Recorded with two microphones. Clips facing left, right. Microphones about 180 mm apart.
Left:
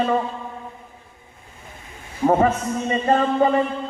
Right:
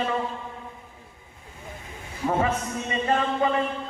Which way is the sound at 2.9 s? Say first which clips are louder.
Left 5 dB; 40° left (ahead or behind).